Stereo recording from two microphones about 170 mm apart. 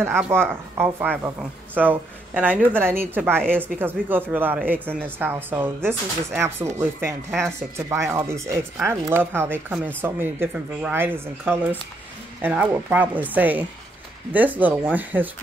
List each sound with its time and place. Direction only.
0.0 s speech: 15° right (ahead or behind)